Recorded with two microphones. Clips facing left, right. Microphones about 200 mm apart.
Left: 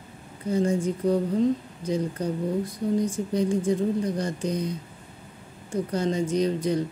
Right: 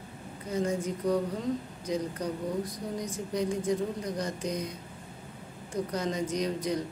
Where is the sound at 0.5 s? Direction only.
30° left (ahead or behind).